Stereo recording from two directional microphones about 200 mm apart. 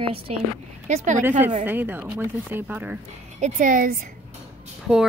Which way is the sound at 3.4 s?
40° right (ahead or behind).